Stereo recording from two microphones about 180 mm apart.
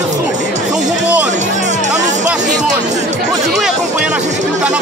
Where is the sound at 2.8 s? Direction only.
40° right (ahead or behind).